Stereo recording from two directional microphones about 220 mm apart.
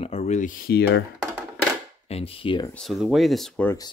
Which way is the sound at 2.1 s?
25° left (ahead or behind).